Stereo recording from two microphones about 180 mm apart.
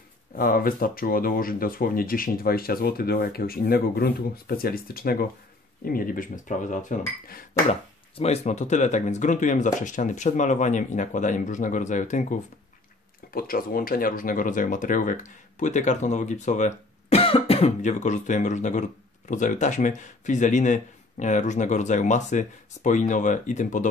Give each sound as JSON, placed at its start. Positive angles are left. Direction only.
{"t": 0.4, "sound": "speech", "side_deg": 50}
{"t": 8.2, "sound": "speech", "side_deg": 40}
{"t": 13.3, "sound": "speech", "side_deg": 55}